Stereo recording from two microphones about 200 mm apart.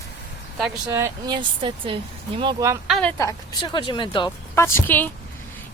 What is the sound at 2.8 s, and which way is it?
Speech, 5° left (ahead or behind).